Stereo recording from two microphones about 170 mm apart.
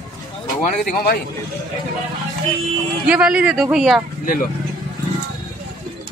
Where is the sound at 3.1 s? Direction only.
5° right (ahead or behind).